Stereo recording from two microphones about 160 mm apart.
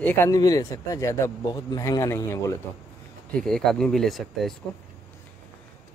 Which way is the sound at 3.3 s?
Centre (ahead or behind).